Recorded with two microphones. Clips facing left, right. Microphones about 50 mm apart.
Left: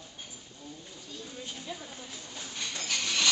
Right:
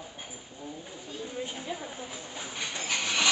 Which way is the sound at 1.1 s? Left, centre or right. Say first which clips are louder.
Right 6 dB; right.